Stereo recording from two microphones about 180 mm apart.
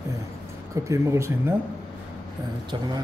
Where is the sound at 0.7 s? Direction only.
15° right (ahead or behind).